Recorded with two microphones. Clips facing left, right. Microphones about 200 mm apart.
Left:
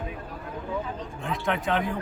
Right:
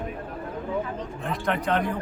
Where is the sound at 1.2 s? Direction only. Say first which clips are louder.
Right 1 dB; centre (ahead or behind).